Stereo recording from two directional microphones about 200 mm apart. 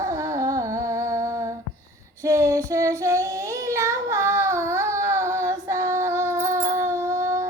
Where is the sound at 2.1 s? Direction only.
15° right (ahead or behind).